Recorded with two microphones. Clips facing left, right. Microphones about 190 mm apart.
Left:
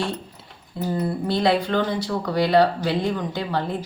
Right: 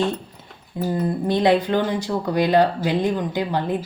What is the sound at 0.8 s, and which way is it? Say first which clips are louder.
Speech: right 2 dB; 15° right (ahead or behind).